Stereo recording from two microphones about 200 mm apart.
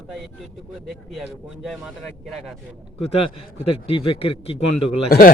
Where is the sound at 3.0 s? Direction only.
30° left (ahead or behind).